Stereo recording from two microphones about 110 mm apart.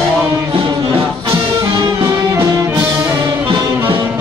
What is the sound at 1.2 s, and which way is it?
Music, 45° right (ahead or behind).